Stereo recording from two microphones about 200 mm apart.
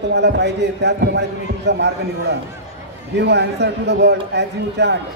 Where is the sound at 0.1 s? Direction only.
55° right (ahead or behind).